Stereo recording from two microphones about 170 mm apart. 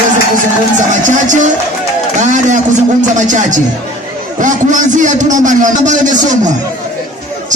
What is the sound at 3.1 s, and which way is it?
A man's voice, 45° right (ahead or behind).